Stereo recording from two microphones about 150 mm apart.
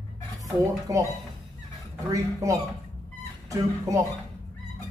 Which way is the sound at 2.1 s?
20° right (ahead or behind).